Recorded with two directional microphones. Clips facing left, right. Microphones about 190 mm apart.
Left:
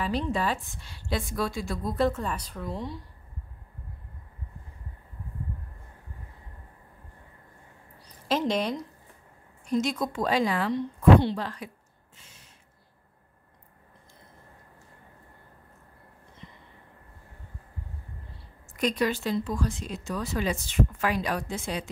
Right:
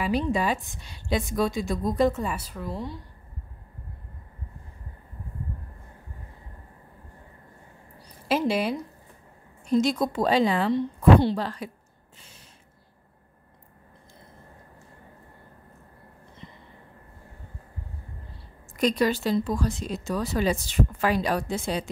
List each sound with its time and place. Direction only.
0.0 s a woman's voice: 15° right (ahead or behind)
8.3 s a woman's voice: 10° right (ahead or behind)
9.7 s speech: 35° right (ahead or behind)
18.8 s speech: 35° right (ahead or behind)